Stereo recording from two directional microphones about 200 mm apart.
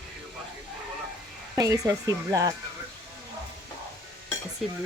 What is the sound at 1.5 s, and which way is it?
Speech, 15° right (ahead or behind).